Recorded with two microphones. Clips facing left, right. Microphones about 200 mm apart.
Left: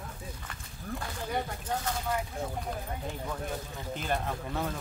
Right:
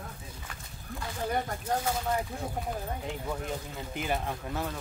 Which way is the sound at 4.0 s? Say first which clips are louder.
Right 1 dB; 5° right (ahead or behind).